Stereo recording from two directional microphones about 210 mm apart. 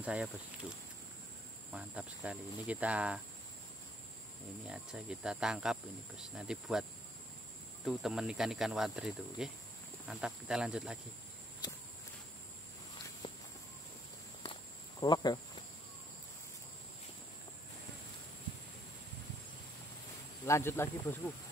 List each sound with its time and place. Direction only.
0.0 s cricket: 5° right (ahead or behind)
4.6 s cricket: 5° right (ahead or behind)
13.2 s walk: 20° left (ahead or behind)
14.4 s walk: 20° left (ahead or behind)
20.4 s speech: 10° left (ahead or behind)